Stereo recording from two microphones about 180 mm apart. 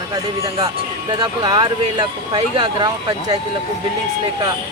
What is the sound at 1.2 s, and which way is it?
Speech, 25° right (ahead or behind).